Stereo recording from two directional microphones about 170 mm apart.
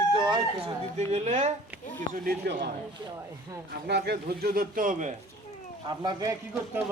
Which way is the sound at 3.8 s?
75° right (ahead or behind).